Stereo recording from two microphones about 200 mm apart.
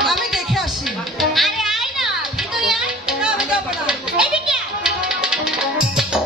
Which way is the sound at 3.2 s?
5° right (ahead or behind).